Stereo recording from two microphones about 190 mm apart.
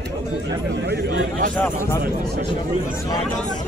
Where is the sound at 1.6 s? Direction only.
15° left (ahead or behind).